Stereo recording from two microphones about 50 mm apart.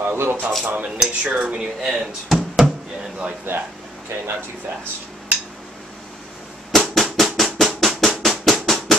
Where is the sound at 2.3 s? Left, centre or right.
Centre.